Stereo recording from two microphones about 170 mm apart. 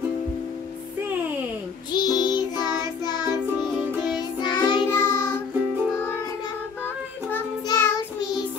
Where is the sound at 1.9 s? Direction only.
25° left (ahead or behind).